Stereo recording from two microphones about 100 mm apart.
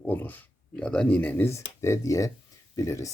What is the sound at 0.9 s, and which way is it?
Speech, 10° left (ahead or behind).